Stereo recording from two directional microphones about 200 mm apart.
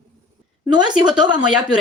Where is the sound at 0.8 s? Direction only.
5° right (ahead or behind).